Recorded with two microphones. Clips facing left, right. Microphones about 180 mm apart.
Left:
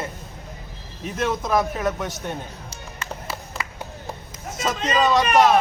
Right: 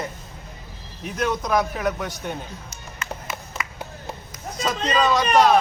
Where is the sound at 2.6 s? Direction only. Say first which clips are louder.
Even; 30° left (ahead or behind).